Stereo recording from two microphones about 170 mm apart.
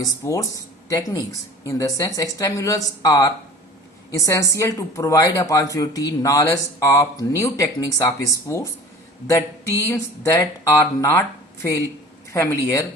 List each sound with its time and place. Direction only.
0.0 s speech: 20° left (ahead or behind)
9.9 s speech: 20° left (ahead or behind)
12.3 s speech: 15° left (ahead or behind)